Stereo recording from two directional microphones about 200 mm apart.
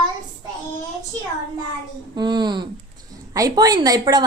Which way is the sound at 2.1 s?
20° right (ahead or behind).